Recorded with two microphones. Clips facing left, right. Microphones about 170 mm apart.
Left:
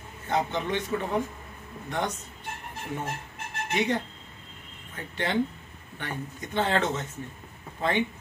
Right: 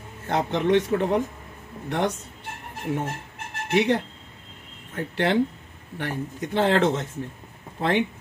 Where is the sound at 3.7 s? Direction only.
80° right.